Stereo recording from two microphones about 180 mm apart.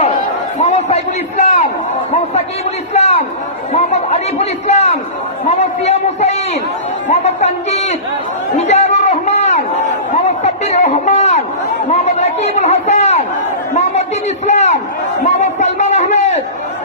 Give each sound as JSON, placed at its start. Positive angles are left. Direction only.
{"t": 0.0, "sound": "chatter", "side_deg": 45}
{"t": 2.9, "sound": "a man's voice", "side_deg": 35}
{"t": 8.5, "sound": "a sound", "side_deg": 40}
{"t": 10.2, "sound": "a man's voice", "side_deg": 40}
{"t": 14.4, "sound": "a man's voice", "side_deg": 40}